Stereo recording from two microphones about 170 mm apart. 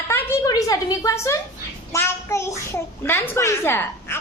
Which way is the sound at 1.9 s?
15° left (ahead or behind).